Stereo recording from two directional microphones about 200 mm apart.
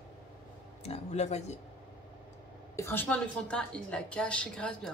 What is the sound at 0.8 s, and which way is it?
Speech, 30° left (ahead or behind).